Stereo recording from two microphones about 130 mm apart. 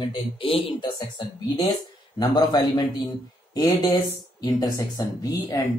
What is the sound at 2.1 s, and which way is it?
Speech, 30° left (ahead or behind).